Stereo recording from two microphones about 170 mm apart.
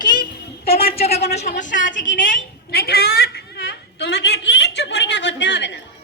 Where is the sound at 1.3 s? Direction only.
45° left (ahead or behind).